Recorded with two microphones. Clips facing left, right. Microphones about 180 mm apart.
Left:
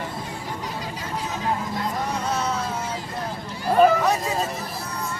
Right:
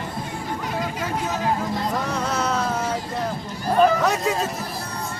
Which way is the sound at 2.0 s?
90° right.